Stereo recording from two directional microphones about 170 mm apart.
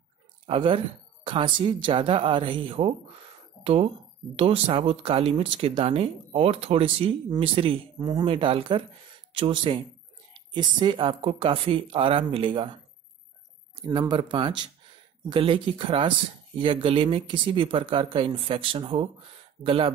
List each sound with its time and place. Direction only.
0.5 s speech: 30° right (ahead or behind)
13.9 s speech: 25° right (ahead or behind)